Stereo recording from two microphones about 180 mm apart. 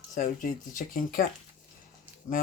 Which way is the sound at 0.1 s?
50° left (ahead or behind).